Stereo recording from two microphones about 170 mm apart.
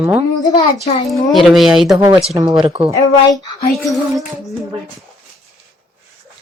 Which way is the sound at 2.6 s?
30° right (ahead or behind).